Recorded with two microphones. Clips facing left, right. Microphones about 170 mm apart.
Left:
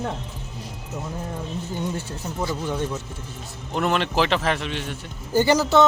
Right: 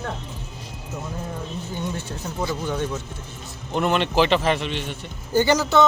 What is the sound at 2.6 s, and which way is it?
A man's voice, 5° left (ahead or behind).